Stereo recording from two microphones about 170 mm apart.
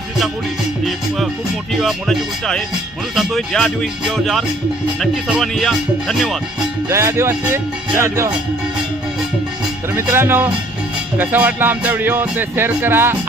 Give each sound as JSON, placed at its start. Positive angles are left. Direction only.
{"t": 1.8, "sound": "speech", "side_deg": 0}
{"t": 6.8, "sound": "speech", "side_deg": -15}
{"t": 9.9, "sound": "speech", "side_deg": -15}